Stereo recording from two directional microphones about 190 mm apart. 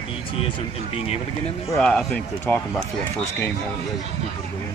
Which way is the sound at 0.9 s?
30° left (ahead or behind).